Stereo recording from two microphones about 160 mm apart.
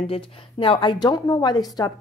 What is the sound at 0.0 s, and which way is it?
A woman's voice, 35° left (ahead or behind).